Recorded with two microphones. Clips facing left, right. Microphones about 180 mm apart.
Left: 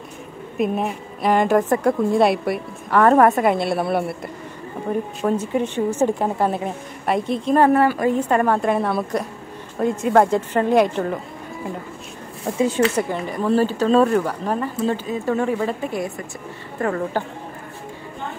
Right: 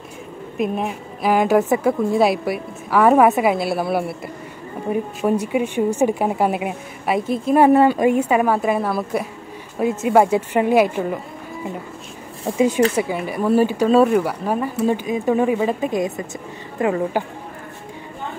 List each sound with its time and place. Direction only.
0.6 s speech: centre (ahead or behind)
7.7 s speech: 20° right (ahead or behind)
12.5 s a woman's voice: 15° right (ahead or behind)